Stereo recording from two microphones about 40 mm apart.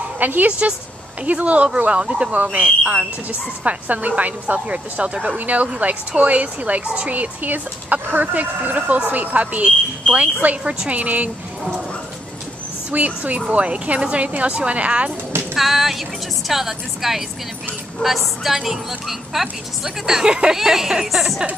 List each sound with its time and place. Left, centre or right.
0.2 s a woman's voice: right
0.5 s speech: right
1.9 s speech: right
3.3 s speech: right
5.4 s speech: right
10.6 s speech: right
10.9 s speech: right
12.9 s speech: right
15.5 s a woman's voice: centre